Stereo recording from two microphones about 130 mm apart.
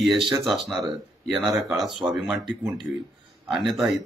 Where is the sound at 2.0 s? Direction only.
5° right (ahead or behind).